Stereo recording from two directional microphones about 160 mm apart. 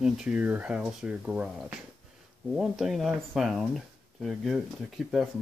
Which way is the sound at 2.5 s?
5° right (ahead or behind).